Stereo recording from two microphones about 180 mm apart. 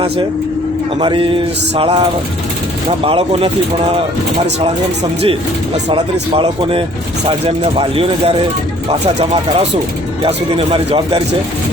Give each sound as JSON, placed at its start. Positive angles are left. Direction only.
{"t": 0.9, "sound": "speech", "side_deg": -30}
{"t": 5.2, "sound": "speech", "side_deg": -30}